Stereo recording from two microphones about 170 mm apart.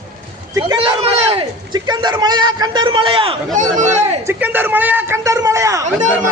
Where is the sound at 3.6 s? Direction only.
45° right (ahead or behind).